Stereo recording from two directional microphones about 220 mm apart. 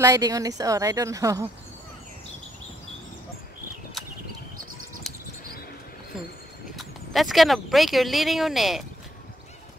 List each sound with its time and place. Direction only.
0.0 s speech: 15° right (ahead or behind)
5.1 s a sound: centre (ahead or behind)
6.8 s speech: centre (ahead or behind)